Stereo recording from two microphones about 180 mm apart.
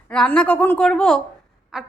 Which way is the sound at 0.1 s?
5° left (ahead or behind).